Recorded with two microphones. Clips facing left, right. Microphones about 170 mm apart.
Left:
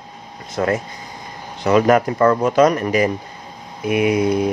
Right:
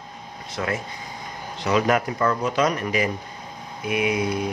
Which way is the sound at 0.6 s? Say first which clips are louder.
Left 8 dB; 45° left (ahead or behind).